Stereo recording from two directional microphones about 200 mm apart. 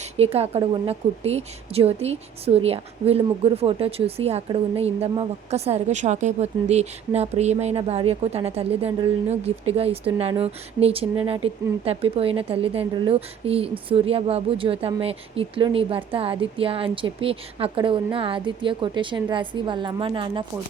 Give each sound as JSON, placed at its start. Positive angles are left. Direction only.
{"t": 0.0, "sound": "speech", "side_deg": -30}